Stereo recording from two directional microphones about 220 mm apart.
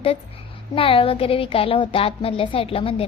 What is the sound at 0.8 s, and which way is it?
Speech, 25° left (ahead or behind).